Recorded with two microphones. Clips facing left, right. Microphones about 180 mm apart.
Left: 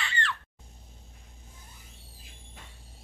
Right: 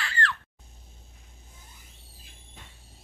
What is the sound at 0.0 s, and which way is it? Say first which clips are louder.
Screaming: right 3 dB; centre (ahead or behind).